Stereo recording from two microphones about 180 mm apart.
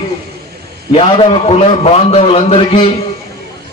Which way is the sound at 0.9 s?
30° left (ahead or behind).